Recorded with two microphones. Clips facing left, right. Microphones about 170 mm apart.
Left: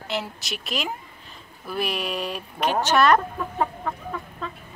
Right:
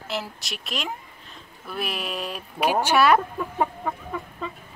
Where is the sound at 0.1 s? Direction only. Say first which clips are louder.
Left 2 dB; centre (ahead or behind).